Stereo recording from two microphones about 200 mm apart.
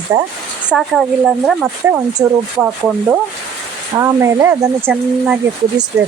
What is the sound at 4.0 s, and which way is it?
Speech, 15° right (ahead or behind).